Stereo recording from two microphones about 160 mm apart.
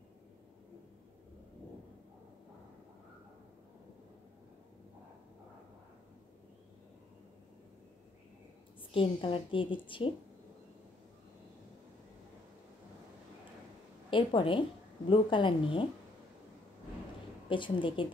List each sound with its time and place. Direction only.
8.9 s a woman's voice: 35° left (ahead or behind)
14.1 s a woman's voice: 30° left (ahead or behind)
17.5 s a woman's voice: 30° left (ahead or behind)